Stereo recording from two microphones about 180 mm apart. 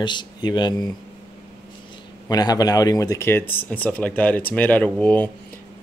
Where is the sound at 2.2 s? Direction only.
20° left (ahead or behind).